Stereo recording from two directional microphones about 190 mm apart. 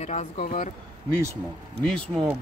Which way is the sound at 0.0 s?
40° left (ahead or behind).